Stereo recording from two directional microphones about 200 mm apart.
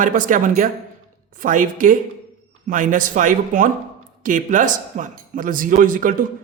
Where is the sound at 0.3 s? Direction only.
40° right (ahead or behind).